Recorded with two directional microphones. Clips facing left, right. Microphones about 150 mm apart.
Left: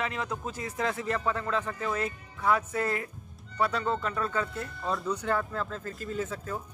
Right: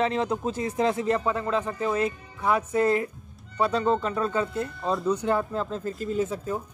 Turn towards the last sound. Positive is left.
turn(degrees=-20)  # may be behind; listen again after turning